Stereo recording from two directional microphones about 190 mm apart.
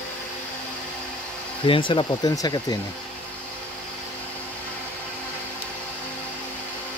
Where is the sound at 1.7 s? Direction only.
25° left (ahead or behind).